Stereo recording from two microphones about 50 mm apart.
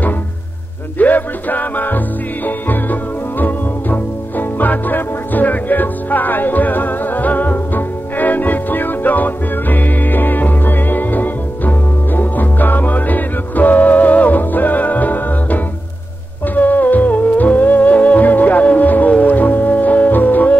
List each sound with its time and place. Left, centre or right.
0.9 s music: left